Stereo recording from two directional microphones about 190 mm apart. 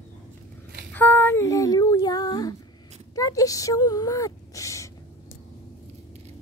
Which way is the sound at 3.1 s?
20° left (ahead or behind).